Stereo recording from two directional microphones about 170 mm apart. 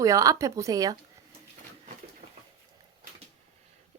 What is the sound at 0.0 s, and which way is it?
Speech, 20° right (ahead or behind).